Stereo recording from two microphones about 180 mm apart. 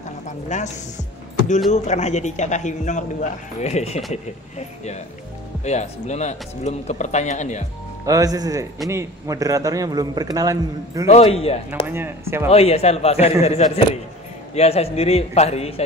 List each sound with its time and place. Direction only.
0.5 s a man's voice: 40° left (ahead or behind)
1.7 s a man's voice: 40° left (ahead or behind)
8.0 s a man's voice: 20° right (ahead or behind)
11.1 s a man's voice: 35° left (ahead or behind)
11.9 s speech: 15° right (ahead or behind)
12.4 s a man's voice: 35° left (ahead or behind)